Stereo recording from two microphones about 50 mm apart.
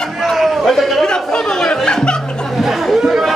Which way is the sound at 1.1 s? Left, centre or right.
Centre.